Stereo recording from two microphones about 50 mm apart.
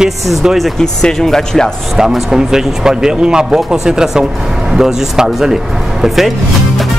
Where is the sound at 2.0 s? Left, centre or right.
Centre.